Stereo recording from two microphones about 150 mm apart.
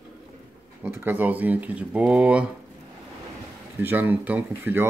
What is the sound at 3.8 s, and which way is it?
Speech, 15° right (ahead or behind).